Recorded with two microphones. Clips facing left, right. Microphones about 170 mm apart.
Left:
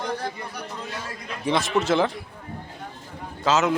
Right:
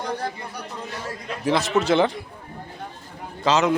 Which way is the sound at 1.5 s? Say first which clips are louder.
Right 2 dB; centre (ahead or behind).